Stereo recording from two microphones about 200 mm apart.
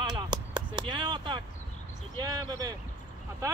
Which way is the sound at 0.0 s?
20° right (ahead or behind).